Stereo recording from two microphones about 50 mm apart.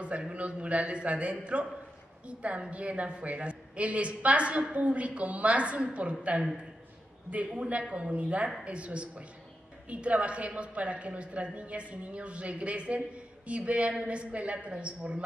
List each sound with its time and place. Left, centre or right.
0.3 s a man's voice: right